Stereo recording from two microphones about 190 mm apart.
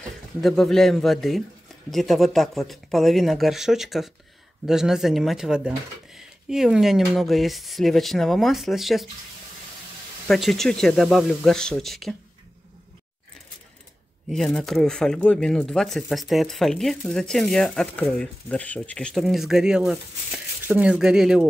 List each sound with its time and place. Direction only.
0.4 s speech: centre (ahead or behind)
10.2 s speech: centre (ahead or behind)
14.3 s speech: centre (ahead or behind)